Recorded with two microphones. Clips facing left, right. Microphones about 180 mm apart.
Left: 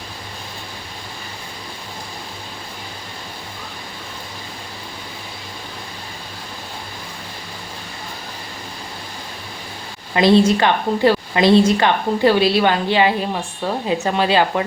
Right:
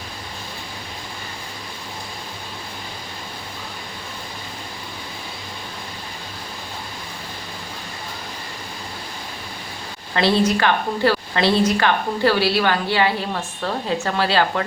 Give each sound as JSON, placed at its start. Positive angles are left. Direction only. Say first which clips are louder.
{"t": 10.2, "sound": "a woman's voice", "louder": "left 5 dB", "side_deg": 20}